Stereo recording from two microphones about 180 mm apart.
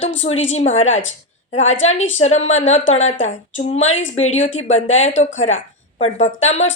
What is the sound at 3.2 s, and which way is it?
Speech, 90° left.